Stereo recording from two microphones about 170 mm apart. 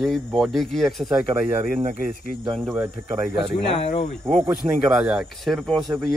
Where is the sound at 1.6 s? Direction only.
40° right (ahead or behind).